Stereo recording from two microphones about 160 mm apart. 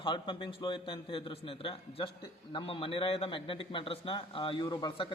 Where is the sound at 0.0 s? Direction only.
30° left (ahead or behind).